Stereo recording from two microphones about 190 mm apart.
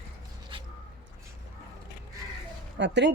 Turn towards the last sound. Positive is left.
turn(degrees=-65)  # may be behind; listen again after turning